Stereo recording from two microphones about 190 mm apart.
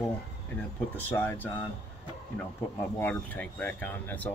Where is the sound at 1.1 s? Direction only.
10° left (ahead or behind).